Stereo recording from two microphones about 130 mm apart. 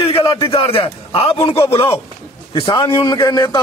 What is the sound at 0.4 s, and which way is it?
A man's voice, 45° left (ahead or behind).